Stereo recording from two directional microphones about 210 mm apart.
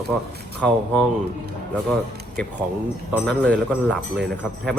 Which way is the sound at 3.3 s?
5° left (ahead or behind).